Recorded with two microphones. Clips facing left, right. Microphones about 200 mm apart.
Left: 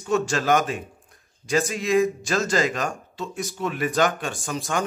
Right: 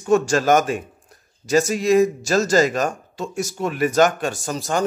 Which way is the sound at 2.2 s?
40° right (ahead or behind).